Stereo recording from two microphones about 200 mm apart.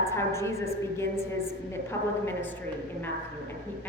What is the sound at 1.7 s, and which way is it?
Speech, 10° left (ahead or behind).